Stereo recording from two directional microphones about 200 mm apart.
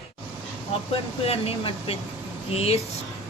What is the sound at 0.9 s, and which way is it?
Speech, 30° left (ahead or behind).